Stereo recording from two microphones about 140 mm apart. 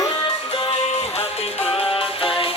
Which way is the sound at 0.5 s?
45° left (ahead or behind).